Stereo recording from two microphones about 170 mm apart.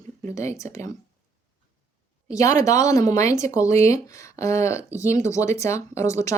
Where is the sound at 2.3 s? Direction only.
20° left (ahead or behind).